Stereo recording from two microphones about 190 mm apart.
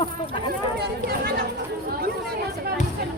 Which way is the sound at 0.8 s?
60° right (ahead or behind).